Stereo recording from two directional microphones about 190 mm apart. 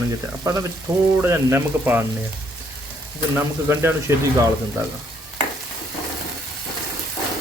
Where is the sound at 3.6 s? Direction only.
15° right (ahead or behind).